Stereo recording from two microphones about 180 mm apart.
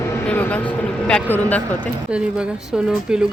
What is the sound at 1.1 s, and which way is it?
Speech, 10° left (ahead or behind).